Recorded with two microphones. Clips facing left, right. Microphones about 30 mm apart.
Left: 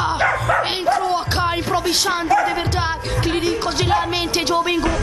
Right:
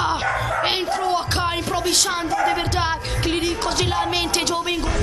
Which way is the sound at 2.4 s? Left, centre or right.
Centre.